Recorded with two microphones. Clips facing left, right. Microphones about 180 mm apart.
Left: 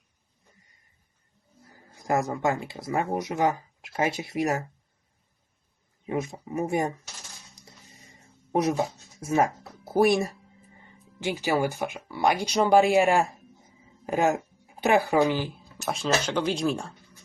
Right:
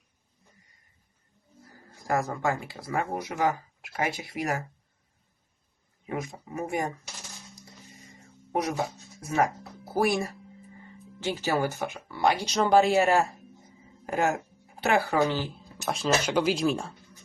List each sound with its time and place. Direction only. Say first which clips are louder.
2.0 s speech: left 2 dB; 20° left (ahead or behind)
6.1 s speech: left 4 dB; 25° left (ahead or behind)
8.5 s speech: left 4 dB; 25° left (ahead or behind)
11.2 s speech: left 2 dB; 15° left (ahead or behind)
15.9 s speech: even; 5° right (ahead or behind)